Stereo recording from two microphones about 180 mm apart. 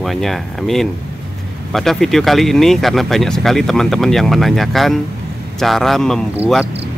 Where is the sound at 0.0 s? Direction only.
Centre (ahead or behind).